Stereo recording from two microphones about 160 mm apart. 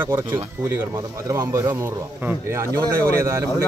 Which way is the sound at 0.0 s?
15° right (ahead or behind).